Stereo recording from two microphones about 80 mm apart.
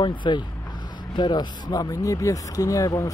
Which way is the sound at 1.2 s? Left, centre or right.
Left.